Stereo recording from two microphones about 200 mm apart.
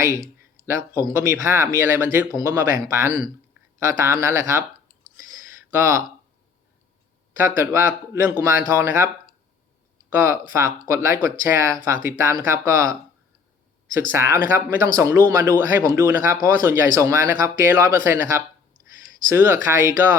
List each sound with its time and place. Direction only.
0.0 s speech: 15° right (ahead or behind)
5.7 s speech: 15° right (ahead or behind)
7.3 s speech: 10° right (ahead or behind)
10.1 s speech: 15° right (ahead or behind)
14.1 s speech: 15° right (ahead or behind)